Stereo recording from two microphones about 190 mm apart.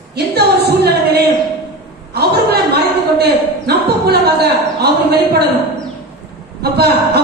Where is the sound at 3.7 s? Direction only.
60° right (ahead or behind).